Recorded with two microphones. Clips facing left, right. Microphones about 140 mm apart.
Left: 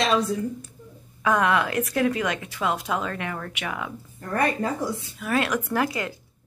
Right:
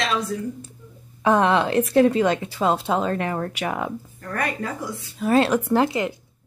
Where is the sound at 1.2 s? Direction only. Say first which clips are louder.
Right 4 dB; 30° right (ahead or behind).